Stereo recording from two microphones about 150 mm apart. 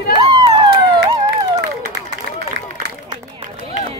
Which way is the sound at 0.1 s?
35° right (ahead or behind).